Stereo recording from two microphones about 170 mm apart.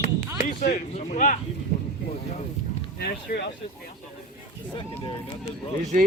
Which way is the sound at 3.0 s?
75° left (ahead or behind).